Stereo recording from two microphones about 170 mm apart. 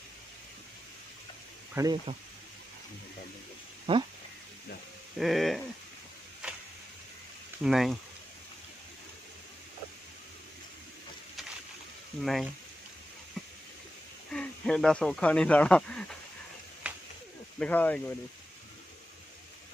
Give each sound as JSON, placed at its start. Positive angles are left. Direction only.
{"t": 1.8, "sound": "speech", "side_deg": -20}
{"t": 3.9, "sound": "speech", "side_deg": -30}
{"t": 5.1, "sound": "speech", "side_deg": 0}
{"t": 6.4, "sound": "printer", "side_deg": -5}
{"t": 7.6, "sound": "speech", "side_deg": 0}
{"t": 12.2, "sound": "speech", "side_deg": 0}
{"t": 14.3, "sound": "speech", "side_deg": 5}
{"t": 16.8, "sound": "a sound", "side_deg": -5}
{"t": 17.6, "sound": "speech", "side_deg": 10}